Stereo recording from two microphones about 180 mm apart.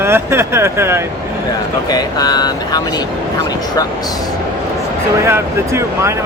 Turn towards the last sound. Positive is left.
turn(degrees=-15)  # may be behind; listen again after turning